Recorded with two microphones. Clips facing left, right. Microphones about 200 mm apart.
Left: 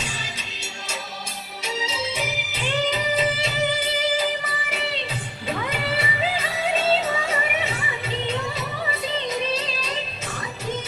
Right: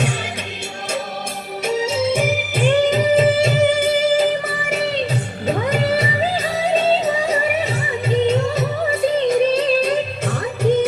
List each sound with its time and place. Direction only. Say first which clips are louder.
1.6 s music: right 10 dB; 50° right (ahead or behind)
5.5 s music: right 8 dB; 40° right (ahead or behind)